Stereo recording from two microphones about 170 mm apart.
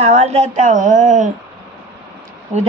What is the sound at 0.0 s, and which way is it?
A woman's voice, 40° right (ahead or behind).